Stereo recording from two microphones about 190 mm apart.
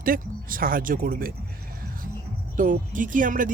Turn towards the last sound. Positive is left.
turn(degrees=-45)  # may be behind; listen again after turning